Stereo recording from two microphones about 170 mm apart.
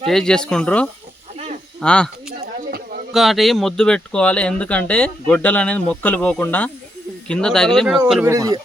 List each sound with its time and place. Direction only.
0.1 s speech: 5° left (ahead or behind)
3.1 s speech: centre (ahead or behind)
8.2 s speech: 15° right (ahead or behind)